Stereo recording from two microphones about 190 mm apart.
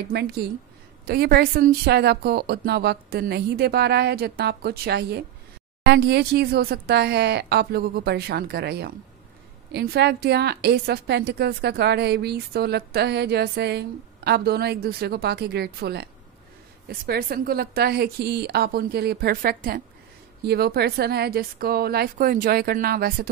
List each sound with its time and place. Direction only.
0.1 s a woman's voice: 60° right (ahead or behind)